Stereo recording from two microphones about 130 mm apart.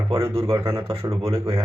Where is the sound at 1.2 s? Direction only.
45° right (ahead or behind).